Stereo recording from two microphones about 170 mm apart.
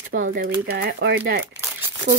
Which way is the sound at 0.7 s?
65° right (ahead or behind).